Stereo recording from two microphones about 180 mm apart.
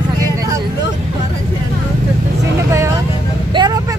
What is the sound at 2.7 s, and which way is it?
Speech, 15° right (ahead or behind).